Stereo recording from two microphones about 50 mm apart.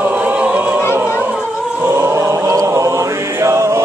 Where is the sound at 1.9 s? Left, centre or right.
Right.